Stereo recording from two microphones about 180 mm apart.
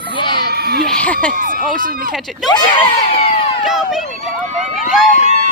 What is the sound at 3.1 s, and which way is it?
Crowd, 30° left (ahead or behind).